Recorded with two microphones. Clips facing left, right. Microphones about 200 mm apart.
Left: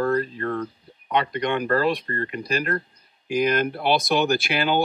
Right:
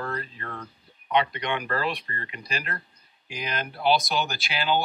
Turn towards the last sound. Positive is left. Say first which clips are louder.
# left 5 dB
turn(degrees=55)  # may be behind; listen again after turning